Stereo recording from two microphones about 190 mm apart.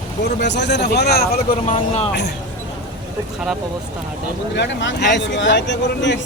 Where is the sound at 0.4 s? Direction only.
65° left (ahead or behind).